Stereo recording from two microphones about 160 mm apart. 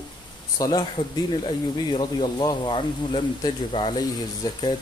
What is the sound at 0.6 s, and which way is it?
Speech, 20° left (ahead or behind).